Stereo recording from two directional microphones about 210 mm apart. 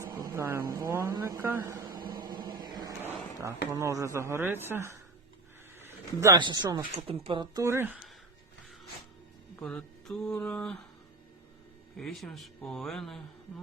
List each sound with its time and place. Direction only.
0.0 s a sound: 15° right (ahead or behind)
3.4 s speech: 15° right (ahead or behind)
9.6 s speech: 5° left (ahead or behind)
11.9 s speech: centre (ahead or behind)